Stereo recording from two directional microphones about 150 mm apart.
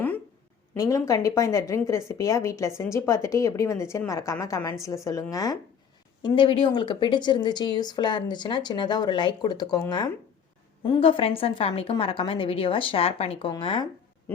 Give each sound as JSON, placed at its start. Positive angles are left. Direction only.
{"t": 0.8, "sound": "a woman's voice", "side_deg": 20}
{"t": 10.8, "sound": "a woman's voice", "side_deg": 30}